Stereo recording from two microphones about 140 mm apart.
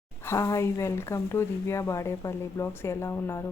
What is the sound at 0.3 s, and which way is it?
Speech, 20° left (ahead or behind).